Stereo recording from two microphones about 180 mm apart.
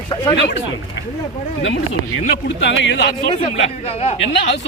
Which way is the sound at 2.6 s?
85° left.